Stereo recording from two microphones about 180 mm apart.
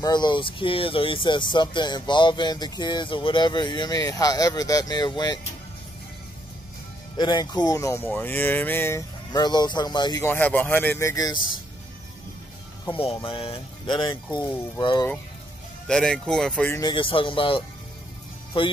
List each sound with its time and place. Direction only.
0.0 s speech: 25° left (ahead or behind)
7.2 s speech: 25° left (ahead or behind)
10.2 s a man's voice: 10° left (ahead or behind)
12.8 s speech: 30° left (ahead or behind)
15.9 s speech: 5° left (ahead or behind)
16.9 s speech: 30° left (ahead or behind)